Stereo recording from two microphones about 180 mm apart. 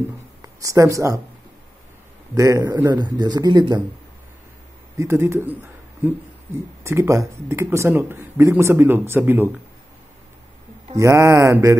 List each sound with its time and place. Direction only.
0.4 s speech: 20° right (ahead or behind)
2.3 s speech: 20° right (ahead or behind)
4.9 s speech: 15° right (ahead or behind)
6.8 s speech: 15° right (ahead or behind)
11.0 s speech: 15° right (ahead or behind)